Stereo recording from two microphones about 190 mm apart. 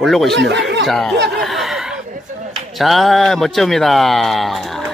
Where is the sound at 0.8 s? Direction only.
Centre (ahead or behind).